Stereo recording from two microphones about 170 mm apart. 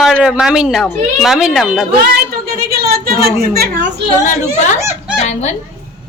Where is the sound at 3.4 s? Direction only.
65° right (ahead or behind).